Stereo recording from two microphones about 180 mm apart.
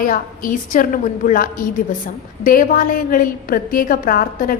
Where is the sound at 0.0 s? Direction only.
50° left (ahead or behind).